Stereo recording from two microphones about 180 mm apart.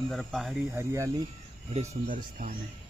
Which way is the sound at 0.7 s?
15° right (ahead or behind).